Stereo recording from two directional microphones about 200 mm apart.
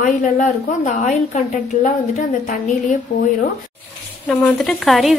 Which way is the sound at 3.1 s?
40° left (ahead or behind).